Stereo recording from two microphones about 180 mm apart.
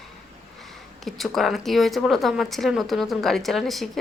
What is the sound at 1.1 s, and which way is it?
A woman's voice, centre (ahead or behind).